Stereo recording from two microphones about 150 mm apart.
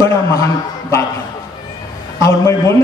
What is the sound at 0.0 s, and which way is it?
A man's voice, 20° left (ahead or behind).